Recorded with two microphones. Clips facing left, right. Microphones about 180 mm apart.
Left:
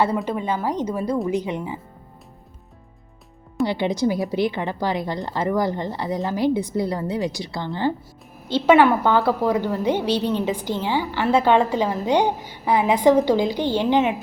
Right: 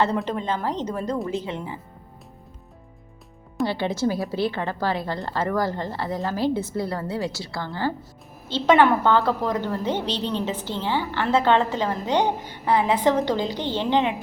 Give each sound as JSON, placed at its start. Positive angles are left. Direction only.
{"t": 0.3, "sound": "a woman's voice", "side_deg": 10}
{"t": 3.6, "sound": "a woman's voice", "side_deg": 15}